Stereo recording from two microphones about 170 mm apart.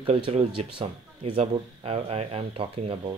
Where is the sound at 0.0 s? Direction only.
35° right (ahead or behind).